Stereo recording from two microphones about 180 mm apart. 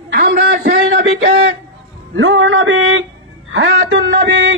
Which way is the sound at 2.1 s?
90° right.